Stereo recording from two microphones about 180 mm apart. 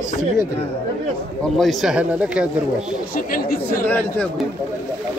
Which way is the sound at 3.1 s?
55° left (ahead or behind).